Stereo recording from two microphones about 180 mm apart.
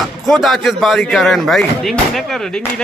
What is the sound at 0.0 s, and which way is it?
Speech, centre (ahead or behind).